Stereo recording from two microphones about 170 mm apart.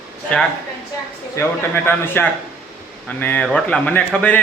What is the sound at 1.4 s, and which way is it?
A man's voice, 10° left (ahead or behind).